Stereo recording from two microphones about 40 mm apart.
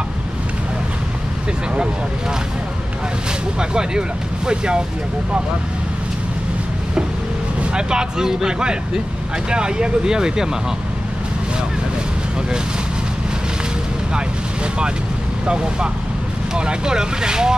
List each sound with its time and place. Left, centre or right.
3.5 s speech: centre
7.7 s speech: right
15.4 s speech: right